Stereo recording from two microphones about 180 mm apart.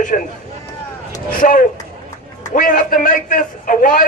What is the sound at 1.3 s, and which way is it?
A man's voice, 50° left (ahead or behind).